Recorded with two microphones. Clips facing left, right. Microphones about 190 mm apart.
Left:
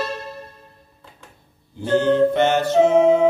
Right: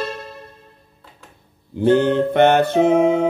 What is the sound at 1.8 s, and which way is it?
Music, 60° right (ahead or behind).